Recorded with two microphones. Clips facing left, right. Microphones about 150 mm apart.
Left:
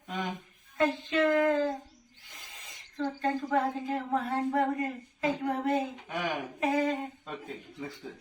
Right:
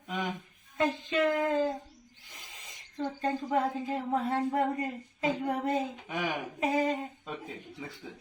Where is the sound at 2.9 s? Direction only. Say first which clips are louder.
Left 1 dB; 15° right (ahead or behind).